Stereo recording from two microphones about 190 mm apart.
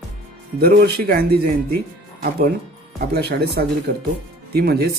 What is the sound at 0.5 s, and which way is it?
Speech, 55° right (ahead or behind).